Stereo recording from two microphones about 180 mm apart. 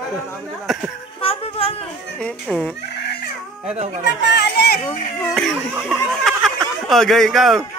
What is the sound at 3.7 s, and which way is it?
Speech, 40° right (ahead or behind).